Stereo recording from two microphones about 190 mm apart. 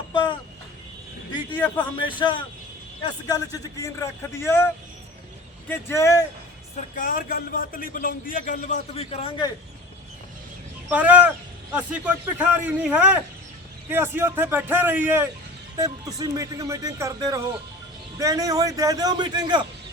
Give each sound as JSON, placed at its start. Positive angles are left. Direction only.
{"t": 1.5, "sound": "a man's voice", "side_deg": 10}
{"t": 2.0, "sound": "a man's voice", "side_deg": 25}
{"t": 6.9, "sound": "a man's voice", "side_deg": 45}
{"t": 10.8, "sound": "a man's voice", "side_deg": -10}